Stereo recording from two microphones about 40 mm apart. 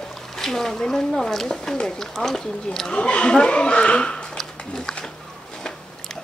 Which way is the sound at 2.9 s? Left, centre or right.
Left.